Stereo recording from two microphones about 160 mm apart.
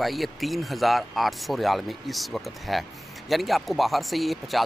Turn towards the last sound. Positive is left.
turn(degrees=0)  # may be behind; listen again after turning